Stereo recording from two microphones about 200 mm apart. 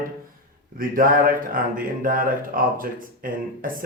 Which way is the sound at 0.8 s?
45° right (ahead or behind).